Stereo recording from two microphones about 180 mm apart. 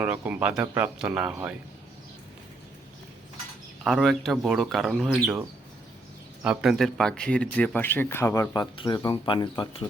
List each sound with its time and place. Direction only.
0.0 s speech: 10° right (ahead or behind)
3.8 s speech: centre (ahead or behind)
6.4 s speech: 5° right (ahead or behind); by 9.8 s 25° left (ahead or behind)